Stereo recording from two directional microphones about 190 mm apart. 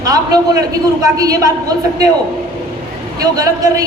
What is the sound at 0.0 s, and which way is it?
A man's voice, 20° right (ahead or behind).